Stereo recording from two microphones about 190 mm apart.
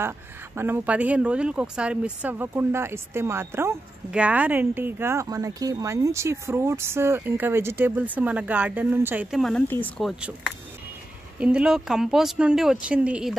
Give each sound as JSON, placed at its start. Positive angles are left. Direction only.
{"t": 0.6, "sound": "speech", "side_deg": -10}